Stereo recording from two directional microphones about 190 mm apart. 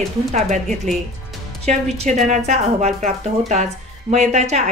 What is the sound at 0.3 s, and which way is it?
Speech, 40° right (ahead or behind).